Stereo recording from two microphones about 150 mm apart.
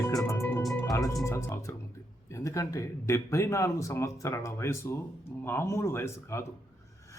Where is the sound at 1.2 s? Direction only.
20° left (ahead or behind).